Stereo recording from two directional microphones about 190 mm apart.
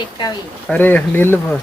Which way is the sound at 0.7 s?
10° left (ahead or behind).